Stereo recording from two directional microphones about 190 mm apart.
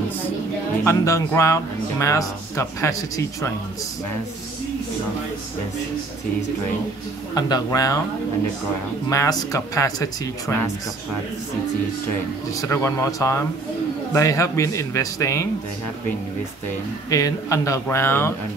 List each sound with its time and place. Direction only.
0.8 s speech: 15° left (ahead or behind)
7.3 s speech: 20° left (ahead or behind)
9.1 s speech: 15° left (ahead or behind)
12.5 s speech: 15° left (ahead or behind)
17.1 s speech: 15° left (ahead or behind)